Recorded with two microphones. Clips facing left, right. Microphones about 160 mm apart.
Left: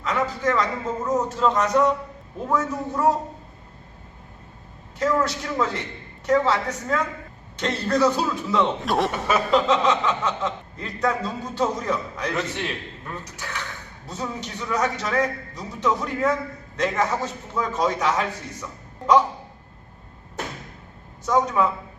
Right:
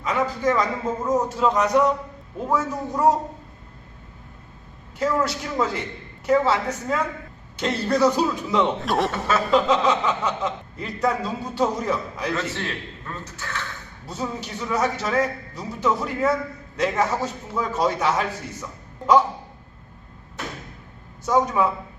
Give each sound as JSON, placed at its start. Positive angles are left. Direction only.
{"t": 0.0, "sound": "a man's voice", "side_deg": -10}
{"t": 4.9, "sound": "a man's voice", "side_deg": -10}
{"t": 8.9, "sound": "a man's voice", "side_deg": 0}
{"t": 9.1, "sound": "a man's voice", "side_deg": 10}
{"t": 9.5, "sound": "a man's voice", "side_deg": -5}
{"t": 12.3, "sound": "a man's voice", "side_deg": 15}
{"t": 14.1, "sound": "a man's voice", "side_deg": -10}
{"t": 21.2, "sound": "a man's voice", "side_deg": -10}